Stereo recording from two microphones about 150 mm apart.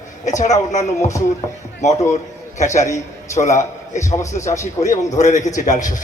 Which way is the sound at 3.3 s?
55° left (ahead or behind).